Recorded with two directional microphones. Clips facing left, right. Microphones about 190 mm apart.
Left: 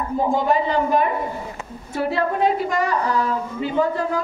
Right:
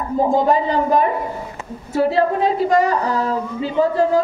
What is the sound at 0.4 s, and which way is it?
A woman's voice, 35° right (ahead or behind).